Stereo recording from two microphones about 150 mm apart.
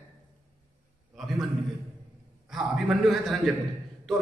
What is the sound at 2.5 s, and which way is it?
A man's voice, centre (ahead or behind).